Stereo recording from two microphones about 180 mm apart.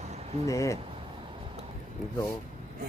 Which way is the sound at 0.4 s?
15° left (ahead or behind).